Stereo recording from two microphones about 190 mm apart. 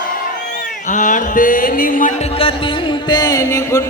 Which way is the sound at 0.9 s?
40° left (ahead or behind).